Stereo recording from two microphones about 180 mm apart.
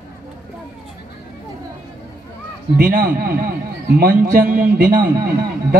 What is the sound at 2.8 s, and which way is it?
A man's voice, 55° right (ahead or behind).